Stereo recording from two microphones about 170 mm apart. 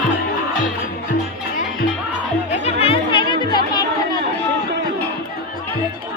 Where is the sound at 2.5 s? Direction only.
35° left (ahead or behind).